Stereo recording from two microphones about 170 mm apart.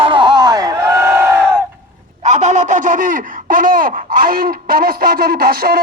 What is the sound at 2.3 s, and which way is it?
Speech, 45° right (ahead or behind).